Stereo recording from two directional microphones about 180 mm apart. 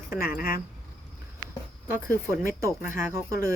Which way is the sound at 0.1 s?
50° left (ahead or behind).